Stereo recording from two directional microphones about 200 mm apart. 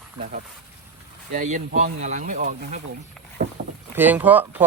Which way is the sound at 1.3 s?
40° right (ahead or behind).